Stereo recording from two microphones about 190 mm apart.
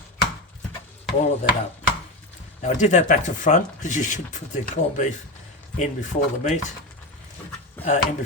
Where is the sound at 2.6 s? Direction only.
40° left (ahead or behind).